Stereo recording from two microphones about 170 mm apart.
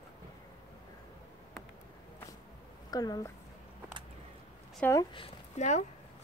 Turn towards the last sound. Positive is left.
turn(degrees=45)  # may be behind; listen again after turning